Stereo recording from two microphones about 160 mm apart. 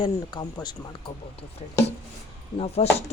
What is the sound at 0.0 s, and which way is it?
Speech, 25° left (ahead or behind).